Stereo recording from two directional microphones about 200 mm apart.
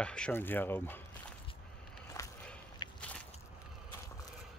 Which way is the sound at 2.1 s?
5° left (ahead or behind).